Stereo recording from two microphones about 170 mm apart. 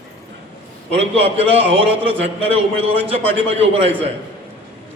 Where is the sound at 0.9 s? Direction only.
35° right (ahead or behind).